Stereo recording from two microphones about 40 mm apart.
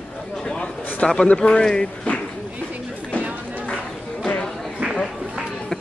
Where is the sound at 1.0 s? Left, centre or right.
Left.